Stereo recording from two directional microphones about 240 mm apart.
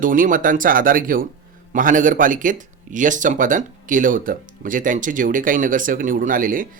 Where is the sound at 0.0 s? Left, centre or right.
Right.